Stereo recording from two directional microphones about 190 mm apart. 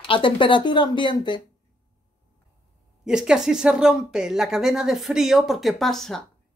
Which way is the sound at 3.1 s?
5° right (ahead or behind).